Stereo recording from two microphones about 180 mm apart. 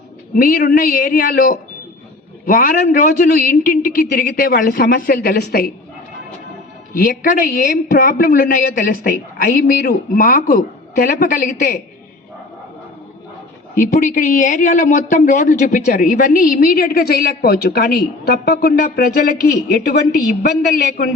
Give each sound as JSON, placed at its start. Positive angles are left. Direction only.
{"t": 0.4, "sound": "speech", "side_deg": 55}
{"t": 6.9, "sound": "speech", "side_deg": 50}
{"t": 13.7, "sound": "speech", "side_deg": 45}